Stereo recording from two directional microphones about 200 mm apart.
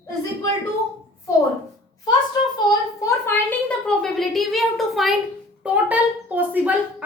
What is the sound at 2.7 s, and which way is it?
Speech, 15° left (ahead or behind).